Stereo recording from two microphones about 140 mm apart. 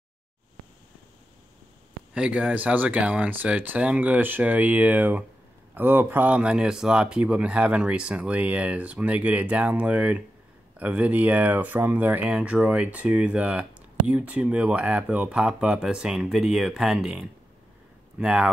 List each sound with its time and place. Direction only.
2.1 s speech: 10° right (ahead or behind)